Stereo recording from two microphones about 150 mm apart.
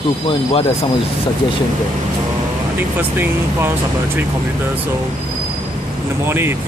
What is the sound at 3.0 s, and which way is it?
Speech, 15° right (ahead or behind).